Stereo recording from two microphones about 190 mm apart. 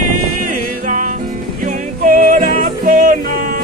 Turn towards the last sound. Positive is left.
turn(degrees=-45)  # may be behind; listen again after turning